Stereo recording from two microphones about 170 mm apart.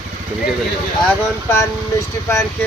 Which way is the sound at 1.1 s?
15° left (ahead or behind).